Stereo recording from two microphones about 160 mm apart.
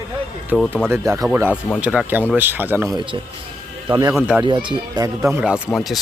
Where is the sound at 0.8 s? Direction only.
15° right (ahead or behind).